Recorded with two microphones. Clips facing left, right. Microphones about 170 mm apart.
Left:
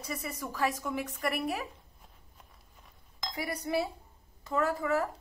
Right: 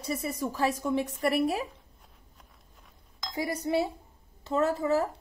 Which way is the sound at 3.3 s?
25° right (ahead or behind).